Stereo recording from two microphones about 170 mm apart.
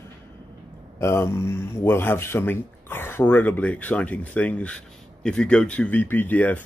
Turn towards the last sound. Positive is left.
turn(degrees=10)  # may be behind; listen again after turning